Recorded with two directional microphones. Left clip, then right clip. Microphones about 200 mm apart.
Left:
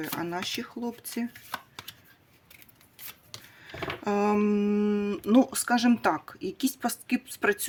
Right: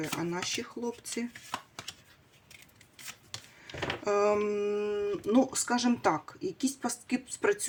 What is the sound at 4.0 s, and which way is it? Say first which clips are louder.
Speech: left 1 dB; 40° left (ahead or behind).